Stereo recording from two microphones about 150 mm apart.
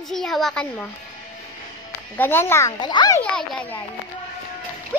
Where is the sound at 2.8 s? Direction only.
30° left (ahead or behind).